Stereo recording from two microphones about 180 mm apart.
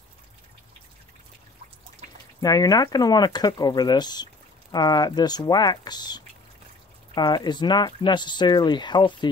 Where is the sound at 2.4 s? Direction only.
20° left (ahead or behind).